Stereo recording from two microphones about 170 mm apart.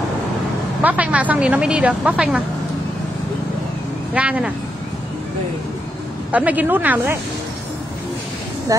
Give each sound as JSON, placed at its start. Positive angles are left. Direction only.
{"t": 0.8, "sound": "speech", "side_deg": -10}
{"t": 4.1, "sound": "speech", "side_deg": -5}
{"t": 6.3, "sound": "speech", "side_deg": -10}